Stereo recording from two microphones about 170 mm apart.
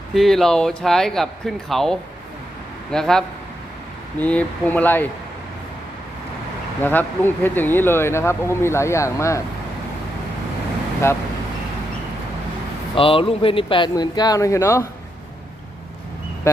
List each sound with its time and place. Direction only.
0.1 s speech: centre (ahead or behind)
6.8 s speech: 10° left (ahead or behind)
11.0 s speech: 15° left (ahead or behind)
13.0 s speech: 35° left (ahead or behind); by 14.8 s 15° left (ahead or behind)